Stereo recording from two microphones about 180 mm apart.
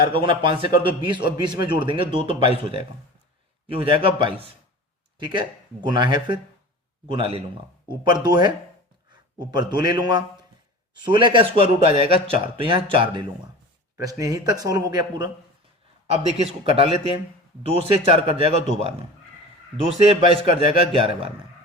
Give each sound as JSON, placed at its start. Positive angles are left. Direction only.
{"t": 0.1, "sound": "a man's voice", "side_deg": -30}
{"t": 16.0, "sound": "a man's voice", "side_deg": -35}
{"t": 20.1, "sound": "a man's voice", "side_deg": -35}